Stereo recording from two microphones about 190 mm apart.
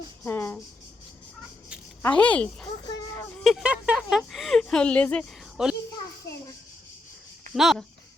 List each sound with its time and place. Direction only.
0.3 s speech: 10° left (ahead or behind)
2.0 s a woman's voice: 10° left (ahead or behind)
3.4 s a sound: 5° right (ahead or behind)
7.5 s speech: centre (ahead or behind)